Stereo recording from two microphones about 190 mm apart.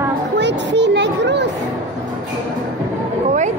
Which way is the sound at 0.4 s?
65° right (ahead or behind).